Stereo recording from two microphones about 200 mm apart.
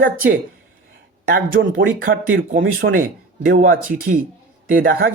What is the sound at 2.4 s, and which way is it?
Speech, 45° right (ahead or behind).